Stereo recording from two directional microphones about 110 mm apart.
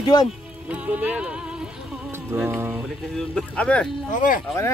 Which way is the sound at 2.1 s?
20° right (ahead or behind).